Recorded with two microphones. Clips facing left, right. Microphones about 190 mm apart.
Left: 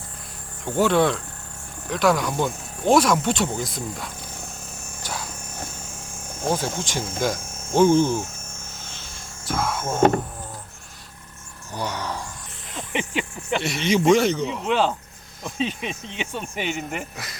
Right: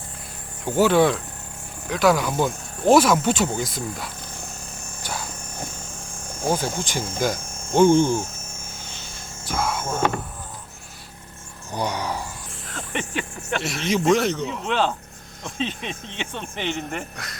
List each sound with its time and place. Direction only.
0.6 s speech: 5° right (ahead or behind)
5.0 s a sound: centre (ahead or behind)
6.4 s speech: 5° right (ahead or behind)
8.8 s a sound: centre (ahead or behind)
11.7 s speech: 15° right (ahead or behind)
12.7 s speech: 15° left (ahead or behind)
13.6 s speech: centre (ahead or behind)